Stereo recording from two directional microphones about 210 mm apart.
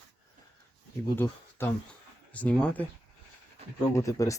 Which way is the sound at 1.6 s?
10° left (ahead or behind).